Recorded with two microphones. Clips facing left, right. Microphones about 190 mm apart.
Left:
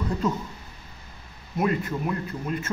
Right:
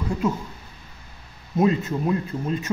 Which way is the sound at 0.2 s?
10° right (ahead or behind).